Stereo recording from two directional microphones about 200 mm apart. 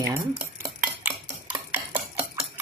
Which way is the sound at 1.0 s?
10° right (ahead or behind).